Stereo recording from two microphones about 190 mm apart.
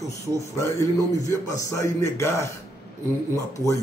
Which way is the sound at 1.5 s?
15° left (ahead or behind).